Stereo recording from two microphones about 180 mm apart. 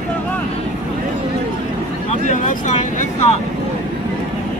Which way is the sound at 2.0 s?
40° left (ahead or behind).